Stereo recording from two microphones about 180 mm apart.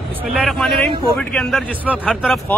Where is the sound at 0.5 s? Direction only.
Centre (ahead or behind).